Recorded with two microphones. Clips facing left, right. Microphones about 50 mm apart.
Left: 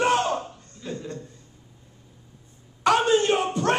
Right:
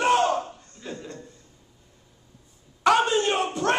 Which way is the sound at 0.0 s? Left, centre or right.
Centre.